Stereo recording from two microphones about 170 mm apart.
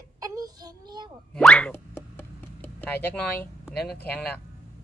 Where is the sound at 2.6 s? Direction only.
10° left (ahead or behind).